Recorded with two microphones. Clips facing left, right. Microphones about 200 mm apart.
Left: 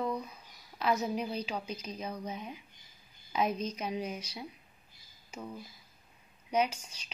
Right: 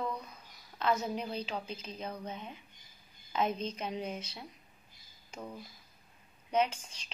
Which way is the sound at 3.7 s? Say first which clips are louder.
Left 2 dB; 10° left (ahead or behind).